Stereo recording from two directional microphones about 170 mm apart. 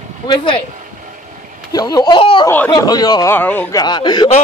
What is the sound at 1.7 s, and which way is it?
Speech, 20° left (ahead or behind).